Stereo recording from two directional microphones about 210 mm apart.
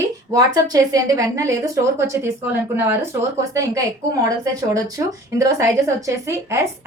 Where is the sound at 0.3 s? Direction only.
15° right (ahead or behind).